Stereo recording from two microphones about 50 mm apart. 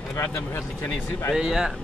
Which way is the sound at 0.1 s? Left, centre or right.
Left.